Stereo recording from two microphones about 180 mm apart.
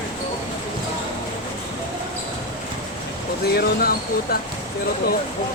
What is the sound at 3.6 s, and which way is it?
Speech, 60° left (ahead or behind).